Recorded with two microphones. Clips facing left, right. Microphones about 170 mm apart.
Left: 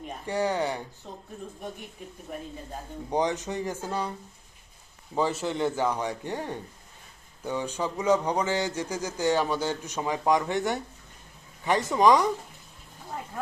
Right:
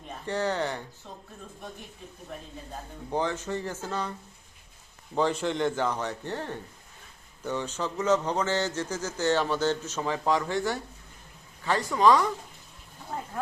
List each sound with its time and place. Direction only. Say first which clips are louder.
0.3 s speech: left 2 dB; 10° left (ahead or behind)
3.1 s speech: left 2 dB; 15° left (ahead or behind)
5.1 s speech: right 1 dB; 5° left (ahead or behind)